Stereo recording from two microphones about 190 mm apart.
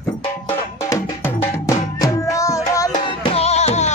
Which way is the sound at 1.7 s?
15° left (ahead or behind).